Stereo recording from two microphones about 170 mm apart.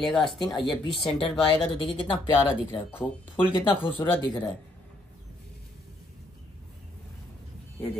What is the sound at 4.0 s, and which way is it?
Speech, 20° left (ahead or behind).